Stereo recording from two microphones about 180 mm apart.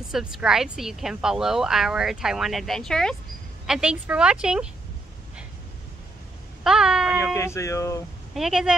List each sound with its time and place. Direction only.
0.1 s a woman's voice: 5° right (ahead or behind)
6.6 s a sound: 5° right (ahead or behind)
7.3 s speech: 15° left (ahead or behind)
8.4 s a woman's voice: centre (ahead or behind)